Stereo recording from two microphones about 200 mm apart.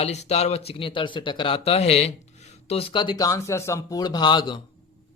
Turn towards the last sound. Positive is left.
turn(degrees=20)  # may be behind; listen again after turning